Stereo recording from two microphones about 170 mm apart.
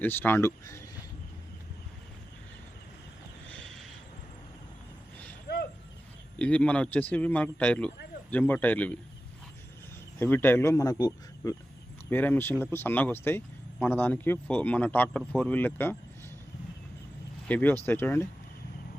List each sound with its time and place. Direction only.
0.0 s speech: 10° left (ahead or behind)
3.5 s a sound: 5° left (ahead or behind)
6.4 s speech: 5° left (ahead or behind)
10.2 s speech: 10° left (ahead or behind)
17.5 s speech: 10° left (ahead or behind)